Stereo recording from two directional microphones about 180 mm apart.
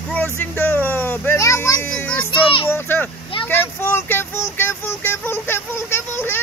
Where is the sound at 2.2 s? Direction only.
30° left (ahead or behind).